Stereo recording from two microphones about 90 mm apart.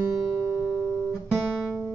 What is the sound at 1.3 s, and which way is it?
Guitar, 15° right (ahead or behind).